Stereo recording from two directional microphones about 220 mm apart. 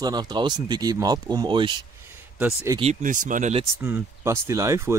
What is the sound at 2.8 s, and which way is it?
Speech, 35° right (ahead or behind).